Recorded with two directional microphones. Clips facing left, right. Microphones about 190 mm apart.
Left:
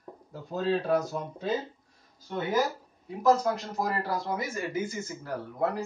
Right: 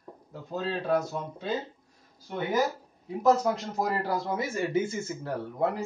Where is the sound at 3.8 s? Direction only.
25° right (ahead or behind).